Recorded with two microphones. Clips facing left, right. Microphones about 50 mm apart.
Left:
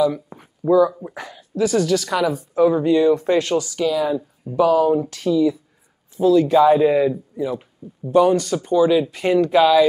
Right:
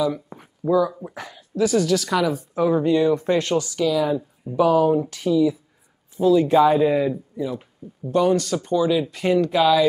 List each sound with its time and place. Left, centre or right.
0.7 s speech: centre
3.7 s speech: centre
4.5 s speech: centre
7.3 s speech: centre
8.0 s speech: centre